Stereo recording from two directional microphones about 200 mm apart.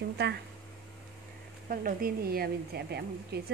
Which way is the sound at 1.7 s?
45° right (ahead or behind).